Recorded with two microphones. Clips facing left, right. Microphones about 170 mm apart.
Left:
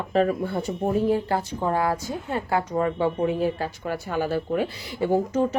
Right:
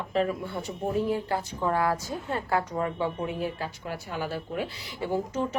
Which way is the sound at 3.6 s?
50° left (ahead or behind).